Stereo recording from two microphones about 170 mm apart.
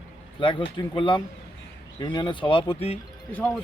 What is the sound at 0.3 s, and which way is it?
A man's voice, 30° left (ahead or behind).